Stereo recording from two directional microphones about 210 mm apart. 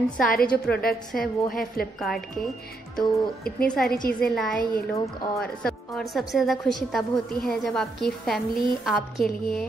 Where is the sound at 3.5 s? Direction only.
5° left (ahead or behind).